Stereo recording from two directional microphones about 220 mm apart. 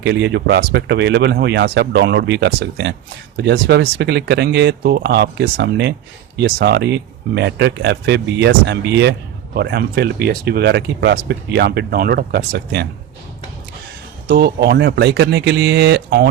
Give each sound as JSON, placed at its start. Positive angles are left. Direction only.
{"t": 0.0, "sound": "speech", "side_deg": -55}
{"t": 14.3, "sound": "speech", "side_deg": -45}